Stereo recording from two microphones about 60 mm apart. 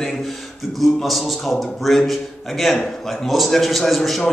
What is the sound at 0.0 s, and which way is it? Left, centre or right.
A man's voice, centre.